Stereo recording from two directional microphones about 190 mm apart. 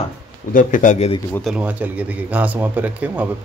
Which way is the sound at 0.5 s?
45° left (ahead or behind).